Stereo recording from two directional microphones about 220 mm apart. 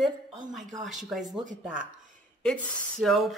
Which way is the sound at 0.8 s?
Centre (ahead or behind).